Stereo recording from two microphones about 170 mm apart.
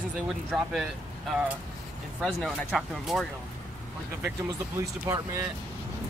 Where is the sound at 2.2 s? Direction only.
Centre (ahead or behind).